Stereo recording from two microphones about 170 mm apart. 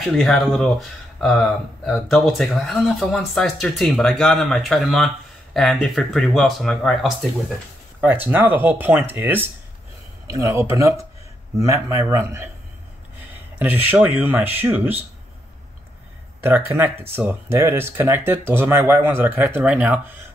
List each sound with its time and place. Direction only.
0.1 s speech: 5° left (ahead or behind)
8.0 s speech: 10° right (ahead or behind)
13.6 s speech: 10° right (ahead or behind)
16.4 s speech: 15° right (ahead or behind)